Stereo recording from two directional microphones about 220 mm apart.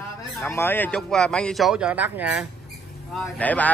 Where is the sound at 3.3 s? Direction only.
5° left (ahead or behind).